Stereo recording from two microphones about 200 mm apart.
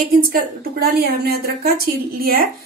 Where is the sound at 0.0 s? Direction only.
45° right (ahead or behind).